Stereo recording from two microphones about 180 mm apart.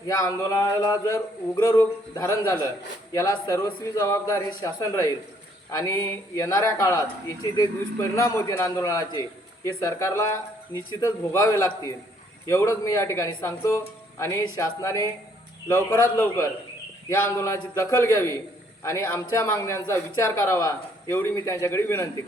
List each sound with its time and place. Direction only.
0.0 s a man's voice: 20° left (ahead or behind)